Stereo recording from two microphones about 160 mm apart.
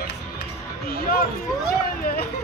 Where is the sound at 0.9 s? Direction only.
65° left (ahead or behind).